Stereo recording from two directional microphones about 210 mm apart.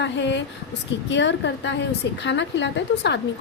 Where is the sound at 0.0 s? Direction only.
55° left (ahead or behind).